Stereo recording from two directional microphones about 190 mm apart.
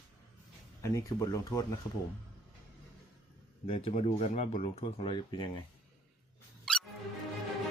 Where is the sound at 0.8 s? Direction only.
15° left (ahead or behind).